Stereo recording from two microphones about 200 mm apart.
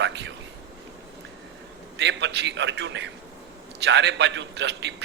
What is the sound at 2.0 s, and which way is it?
A man's voice, 60° right (ahead or behind).